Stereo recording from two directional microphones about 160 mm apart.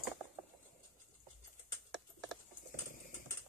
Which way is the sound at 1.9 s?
Centre (ahead or behind).